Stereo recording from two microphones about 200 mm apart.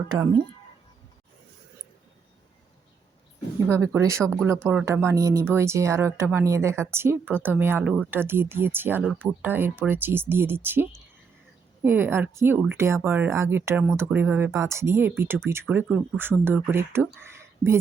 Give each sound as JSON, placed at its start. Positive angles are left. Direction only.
{"t": 0.1, "sound": "speech", "side_deg": -20}
{"t": 3.7, "sound": "speech", "side_deg": -15}
{"t": 17.2, "sound": "a sound", "side_deg": -10}